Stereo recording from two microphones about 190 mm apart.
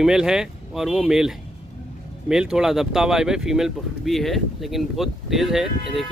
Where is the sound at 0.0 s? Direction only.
5° right (ahead or behind).